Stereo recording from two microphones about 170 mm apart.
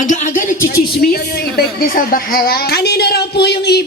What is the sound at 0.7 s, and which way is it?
A woman's voice, 65° left (ahead or behind).